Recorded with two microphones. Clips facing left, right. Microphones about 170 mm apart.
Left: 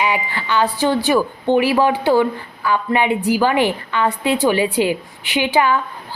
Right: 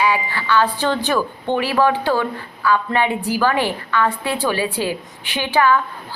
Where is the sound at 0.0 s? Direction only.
20° left (ahead or behind).